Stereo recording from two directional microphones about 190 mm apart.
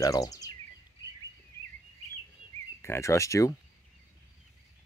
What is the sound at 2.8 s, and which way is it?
Speech, 15° left (ahead or behind).